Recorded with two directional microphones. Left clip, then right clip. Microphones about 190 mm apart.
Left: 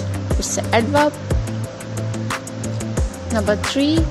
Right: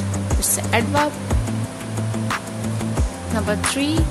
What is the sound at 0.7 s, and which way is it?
Music, 25° left (ahead or behind).